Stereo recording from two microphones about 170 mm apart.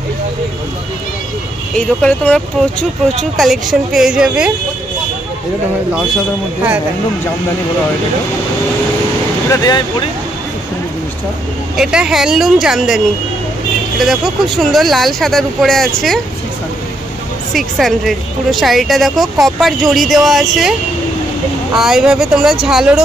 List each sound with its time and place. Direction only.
1.8 s speech: 5° left (ahead or behind)
9.5 s speech: 20° left (ahead or behind)
11.7 s speech: 5° right (ahead or behind)
17.6 s speech: centre (ahead or behind)
21.7 s speech: 5° right (ahead or behind)